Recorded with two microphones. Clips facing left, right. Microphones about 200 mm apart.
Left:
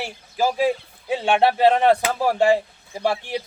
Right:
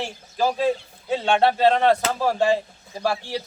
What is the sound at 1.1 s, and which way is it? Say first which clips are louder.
Speech: left 1 dB; 15° left (ahead or behind).